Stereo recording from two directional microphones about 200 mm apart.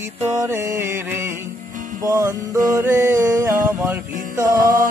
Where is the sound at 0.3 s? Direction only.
15° right (ahead or behind).